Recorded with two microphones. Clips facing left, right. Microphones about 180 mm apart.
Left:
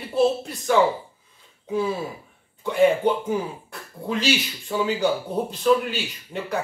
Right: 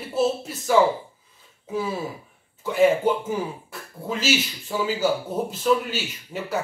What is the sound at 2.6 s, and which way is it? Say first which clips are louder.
Speech: even; 5° right (ahead or behind).